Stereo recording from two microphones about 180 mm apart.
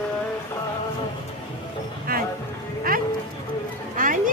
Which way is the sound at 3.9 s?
50° right (ahead or behind).